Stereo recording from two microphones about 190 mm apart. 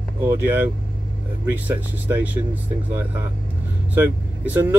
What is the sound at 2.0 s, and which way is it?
Speech, 10° right (ahead or behind).